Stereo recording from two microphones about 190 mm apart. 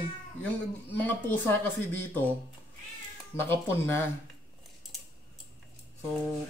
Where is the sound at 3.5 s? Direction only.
10° left (ahead or behind).